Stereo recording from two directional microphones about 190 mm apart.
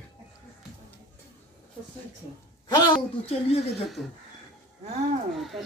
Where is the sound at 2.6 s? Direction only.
20° left (ahead or behind).